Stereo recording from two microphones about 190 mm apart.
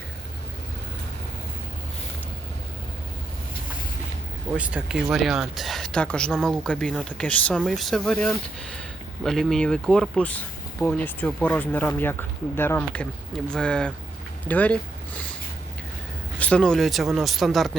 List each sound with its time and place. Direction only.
4.5 s speech: 5° right (ahead or behind)
16.4 s speech: 5° left (ahead or behind)